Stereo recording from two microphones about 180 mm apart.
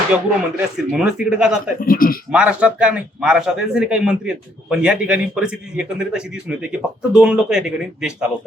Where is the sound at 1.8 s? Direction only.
50° left (ahead or behind).